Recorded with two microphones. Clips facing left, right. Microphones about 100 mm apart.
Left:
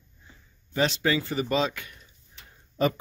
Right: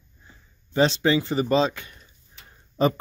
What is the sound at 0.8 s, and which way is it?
Speech, 30° right (ahead or behind).